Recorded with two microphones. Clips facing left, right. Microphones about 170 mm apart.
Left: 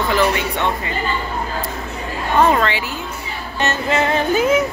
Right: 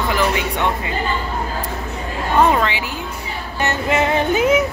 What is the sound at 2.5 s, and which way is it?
Music, 15° right (ahead or behind).